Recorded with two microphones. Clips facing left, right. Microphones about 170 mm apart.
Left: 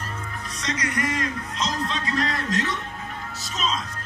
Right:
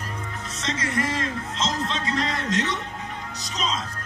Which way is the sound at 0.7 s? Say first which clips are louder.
Even; 25° right (ahead or behind).